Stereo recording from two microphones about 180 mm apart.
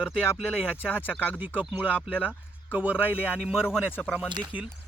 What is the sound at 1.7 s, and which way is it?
Speech, 10° right (ahead or behind).